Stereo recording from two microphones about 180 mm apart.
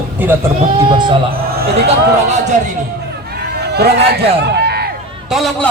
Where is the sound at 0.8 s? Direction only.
25° right (ahead or behind).